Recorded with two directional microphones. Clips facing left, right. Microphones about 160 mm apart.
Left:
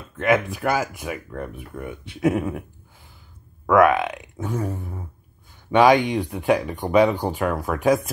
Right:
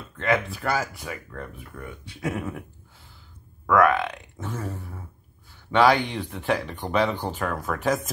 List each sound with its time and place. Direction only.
0.2 s speech: 15° left (ahead or behind)
3.7 s speech: 15° left (ahead or behind)